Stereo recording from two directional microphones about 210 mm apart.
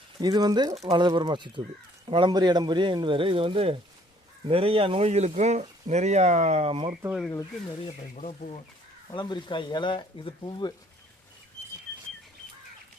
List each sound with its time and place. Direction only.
0.2 s speech: 20° right (ahead or behind)
0.7 s speech: 30° right (ahead or behind)
7.2 s speech: 10° left (ahead or behind)
8.1 s speech: 35° left (ahead or behind)
9.1 s speech: 20° left (ahead or behind)